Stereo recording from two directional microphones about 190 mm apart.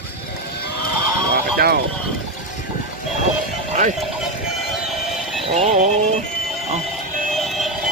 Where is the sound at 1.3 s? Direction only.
60° right (ahead or behind).